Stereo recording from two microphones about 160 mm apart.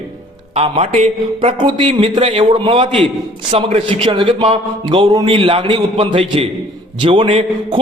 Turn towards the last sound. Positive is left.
turn(degrees=-30)  # may be behind; listen again after turning